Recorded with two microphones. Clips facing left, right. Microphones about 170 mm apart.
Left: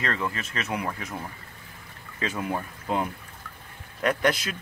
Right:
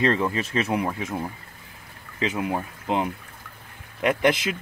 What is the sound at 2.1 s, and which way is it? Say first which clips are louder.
Speech: right 3 dB; 15° right (ahead or behind).